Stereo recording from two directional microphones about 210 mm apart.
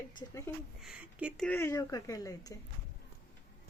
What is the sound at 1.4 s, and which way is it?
Speech, 10° left (ahead or behind).